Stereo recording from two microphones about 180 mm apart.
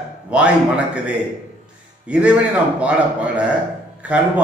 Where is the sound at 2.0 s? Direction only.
5° right (ahead or behind).